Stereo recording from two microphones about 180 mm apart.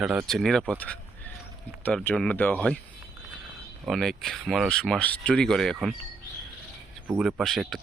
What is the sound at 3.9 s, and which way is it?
Speech, centre (ahead or behind).